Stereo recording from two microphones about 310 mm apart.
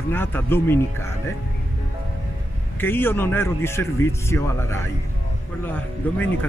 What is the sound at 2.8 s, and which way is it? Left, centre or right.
A man's voice, centre.